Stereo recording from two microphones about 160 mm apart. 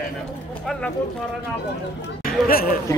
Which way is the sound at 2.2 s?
65° left (ahead or behind).